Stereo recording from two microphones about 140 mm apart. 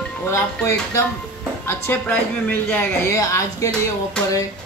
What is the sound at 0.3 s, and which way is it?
Speech, 20° left (ahead or behind).